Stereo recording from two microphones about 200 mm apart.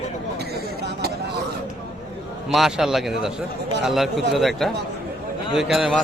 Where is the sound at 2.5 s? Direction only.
Centre (ahead or behind).